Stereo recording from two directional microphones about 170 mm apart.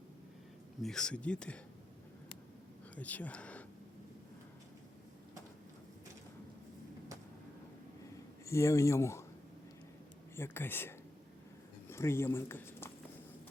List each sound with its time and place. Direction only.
0.8 s speech: 5° left (ahead or behind)
2.9 s speech: 10° left (ahead or behind)
8.4 s speech: 15° left (ahead or behind)
10.3 s speech: 15° left (ahead or behind)